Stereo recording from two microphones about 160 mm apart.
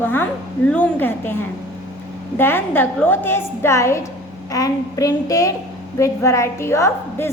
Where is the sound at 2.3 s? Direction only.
15° left (ahead or behind).